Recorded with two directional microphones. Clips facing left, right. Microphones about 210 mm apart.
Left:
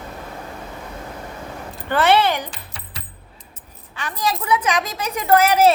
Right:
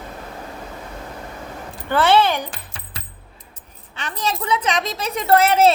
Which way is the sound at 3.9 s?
25° right (ahead or behind).